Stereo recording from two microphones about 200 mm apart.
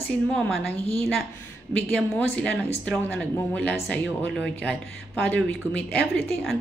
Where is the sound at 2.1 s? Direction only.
10° left (ahead or behind).